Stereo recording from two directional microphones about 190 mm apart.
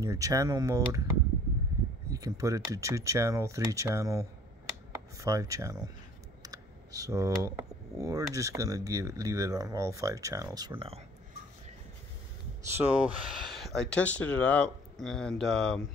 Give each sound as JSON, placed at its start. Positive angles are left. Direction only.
{"t": 0.0, "sound": "speech", "side_deg": -15}
{"t": 2.0, "sound": "speech", "side_deg": -15}
{"t": 12.7, "sound": "speech", "side_deg": -10}